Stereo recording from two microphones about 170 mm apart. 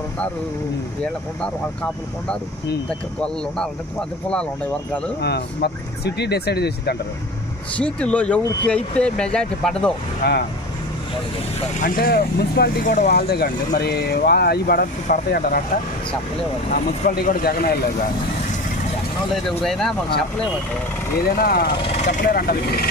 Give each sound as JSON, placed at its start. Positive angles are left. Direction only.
{"t": 1.0, "sound": "speech", "side_deg": 5}
{"t": 5.2, "sound": "speech", "side_deg": 75}
{"t": 7.7, "sound": "speech", "side_deg": 5}
{"t": 10.2, "sound": "speech", "side_deg": 70}
{"t": 11.8, "sound": "speech", "side_deg": 55}
{"t": 13.1, "sound": "speech", "side_deg": 70}
{"t": 16.7, "sound": "speech", "side_deg": 55}
{"t": 19.3, "sound": "speech", "side_deg": 0}
{"t": 21.4, "sound": "speech", "side_deg": 65}